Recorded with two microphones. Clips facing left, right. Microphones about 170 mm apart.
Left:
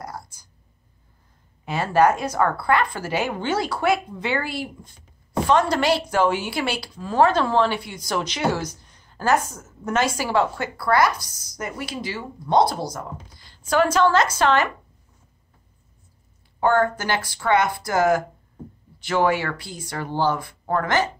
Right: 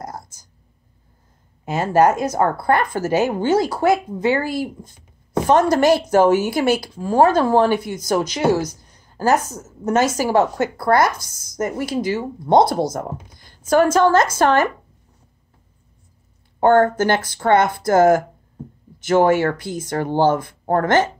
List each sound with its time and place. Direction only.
0.0 s whispering: 45° right (ahead or behind)
1.7 s a woman's voice: 45° right (ahead or behind)
16.5 s a woman's voice: 50° right (ahead or behind)